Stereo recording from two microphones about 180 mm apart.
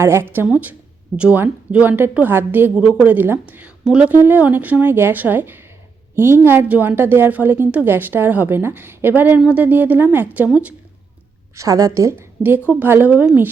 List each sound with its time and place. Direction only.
0.0 s a woman's voice: 15° right (ahead or behind)
11.5 s a woman's voice: 20° right (ahead or behind)